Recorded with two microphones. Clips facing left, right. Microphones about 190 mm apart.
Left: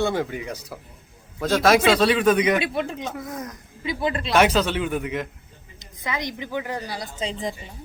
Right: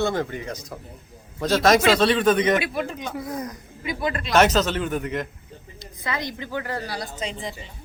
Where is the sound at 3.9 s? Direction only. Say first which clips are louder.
Left 1 dB; 25° left (ahead or behind).